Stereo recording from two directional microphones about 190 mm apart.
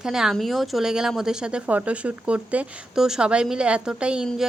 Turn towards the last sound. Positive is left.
turn(degrees=-5)  # may be behind; listen again after turning